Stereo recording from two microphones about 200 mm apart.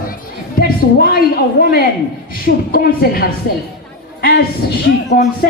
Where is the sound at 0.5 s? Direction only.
50° left (ahead or behind).